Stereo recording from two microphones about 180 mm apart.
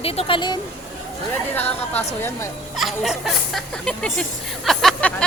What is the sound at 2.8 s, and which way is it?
Speech, centre (ahead or behind).